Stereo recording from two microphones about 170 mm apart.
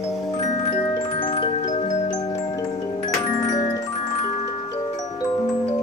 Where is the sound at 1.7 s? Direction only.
50° left (ahead or behind).